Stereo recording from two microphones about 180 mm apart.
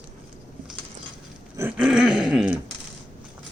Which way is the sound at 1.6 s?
10° right (ahead or behind).